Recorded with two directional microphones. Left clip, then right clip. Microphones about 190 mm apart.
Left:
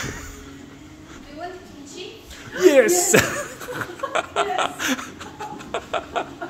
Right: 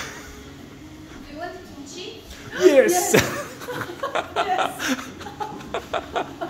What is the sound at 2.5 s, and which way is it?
Chuckle, 25° left (ahead or behind).